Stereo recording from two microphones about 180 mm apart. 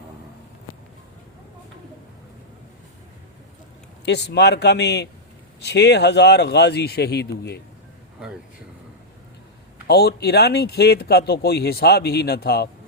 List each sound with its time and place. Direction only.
4.0 s a man's voice: 70° left (ahead or behind)
9.8 s speech: 65° left (ahead or behind)